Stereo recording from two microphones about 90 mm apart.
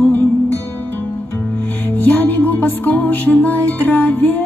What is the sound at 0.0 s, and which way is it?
Music, 25° left (ahead or behind).